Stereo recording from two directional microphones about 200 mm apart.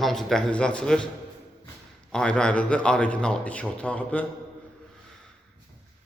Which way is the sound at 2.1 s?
5° left (ahead or behind).